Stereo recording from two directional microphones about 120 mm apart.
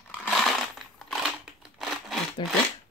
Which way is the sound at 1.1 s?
5° right (ahead or behind).